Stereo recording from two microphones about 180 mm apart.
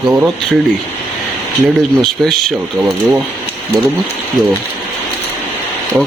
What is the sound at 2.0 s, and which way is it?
Speech, centre (ahead or behind).